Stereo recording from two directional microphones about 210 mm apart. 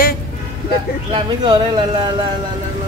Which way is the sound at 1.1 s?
25° right (ahead or behind).